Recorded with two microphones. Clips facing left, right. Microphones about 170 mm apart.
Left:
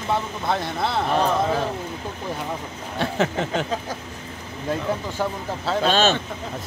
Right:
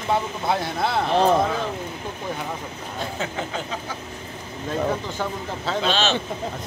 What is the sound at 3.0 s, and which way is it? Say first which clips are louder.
Speech: left 6 dB; 75° left (ahead or behind).